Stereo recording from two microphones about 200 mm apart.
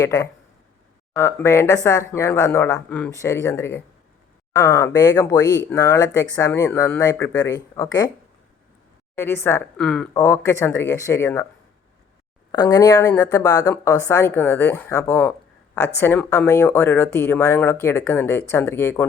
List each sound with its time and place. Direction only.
0.0 s speech: 15° left (ahead or behind)
9.1 s speech: 10° left (ahead or behind)
12.5 s speech: 20° left (ahead or behind)